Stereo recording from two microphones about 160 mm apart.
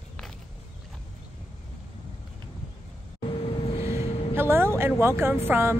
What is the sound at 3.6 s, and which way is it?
Vehicle, 40° left (ahead or behind).